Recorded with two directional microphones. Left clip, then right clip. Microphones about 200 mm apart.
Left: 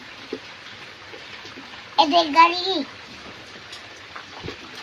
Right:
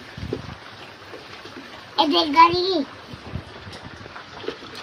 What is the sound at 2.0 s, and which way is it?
Speech, 25° left (ahead or behind).